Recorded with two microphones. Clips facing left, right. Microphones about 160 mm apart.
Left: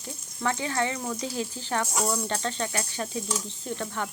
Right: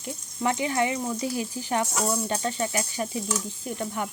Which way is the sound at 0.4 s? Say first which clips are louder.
Right 3 dB; 15° right (ahead or behind).